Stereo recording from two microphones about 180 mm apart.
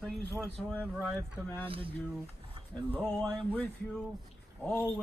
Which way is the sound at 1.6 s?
30° right (ahead or behind).